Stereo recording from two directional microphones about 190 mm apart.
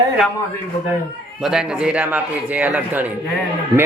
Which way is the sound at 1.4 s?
5° right (ahead or behind).